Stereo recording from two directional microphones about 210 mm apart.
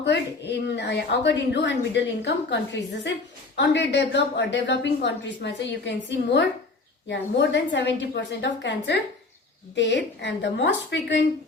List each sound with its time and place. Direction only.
0.0 s a woman's voice: 55° left (ahead or behind)